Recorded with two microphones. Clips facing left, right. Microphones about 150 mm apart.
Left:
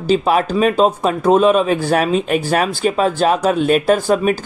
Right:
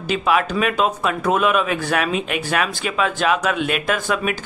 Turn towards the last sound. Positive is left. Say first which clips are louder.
# left 7 dB
turn(degrees=35)  # may be behind; listen again after turning